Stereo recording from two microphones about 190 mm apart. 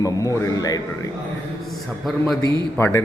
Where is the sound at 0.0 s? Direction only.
15° left (ahead or behind).